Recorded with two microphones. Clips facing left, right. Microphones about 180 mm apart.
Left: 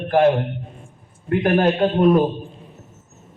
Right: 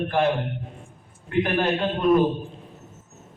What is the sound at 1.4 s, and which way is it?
Speech, 45° left (ahead or behind).